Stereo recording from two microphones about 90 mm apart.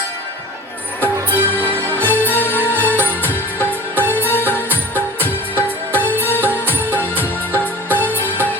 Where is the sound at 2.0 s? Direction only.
20° left (ahead or behind).